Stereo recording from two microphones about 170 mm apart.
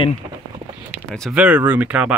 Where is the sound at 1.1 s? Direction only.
Centre (ahead or behind).